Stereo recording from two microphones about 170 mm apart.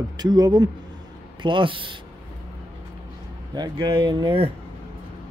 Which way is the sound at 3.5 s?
25° right (ahead or behind).